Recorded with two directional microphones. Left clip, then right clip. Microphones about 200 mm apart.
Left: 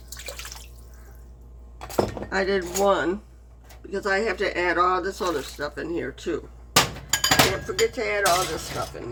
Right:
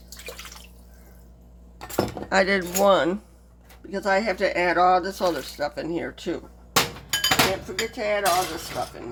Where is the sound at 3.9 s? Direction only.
30° right (ahead or behind).